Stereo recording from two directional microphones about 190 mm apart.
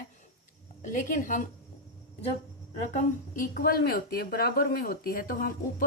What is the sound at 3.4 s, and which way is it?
A woman's voice, 50° left (ahead or behind).